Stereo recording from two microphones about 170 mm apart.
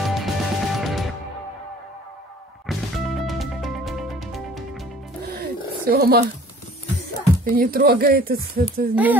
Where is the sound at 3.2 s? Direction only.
Centre (ahead or behind).